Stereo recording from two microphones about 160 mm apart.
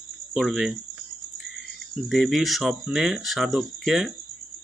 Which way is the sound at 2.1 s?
Centre (ahead or behind).